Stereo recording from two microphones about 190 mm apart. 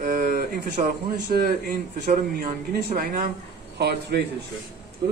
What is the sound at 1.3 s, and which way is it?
Speech, 50° right (ahead or behind).